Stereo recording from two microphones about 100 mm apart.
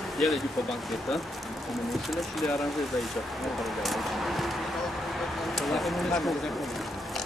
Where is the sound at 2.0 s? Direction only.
Centre (ahead or behind).